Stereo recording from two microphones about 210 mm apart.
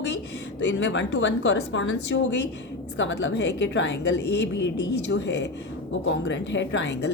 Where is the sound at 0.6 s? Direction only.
60° left (ahead or behind).